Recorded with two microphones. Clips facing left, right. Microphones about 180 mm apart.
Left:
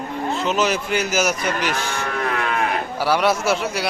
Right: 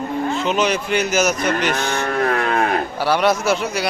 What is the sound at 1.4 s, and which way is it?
Moo, 55° right (ahead or behind).